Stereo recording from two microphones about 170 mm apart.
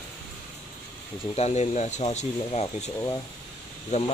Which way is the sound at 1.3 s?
40° left (ahead or behind).